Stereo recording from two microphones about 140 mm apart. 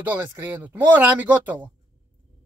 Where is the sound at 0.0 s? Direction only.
15° right (ahead or behind).